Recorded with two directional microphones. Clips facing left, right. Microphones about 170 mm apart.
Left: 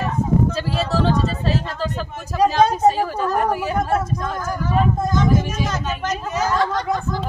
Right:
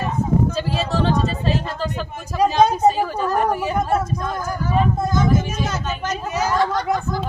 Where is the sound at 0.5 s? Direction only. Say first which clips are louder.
Even; centre (ahead or behind).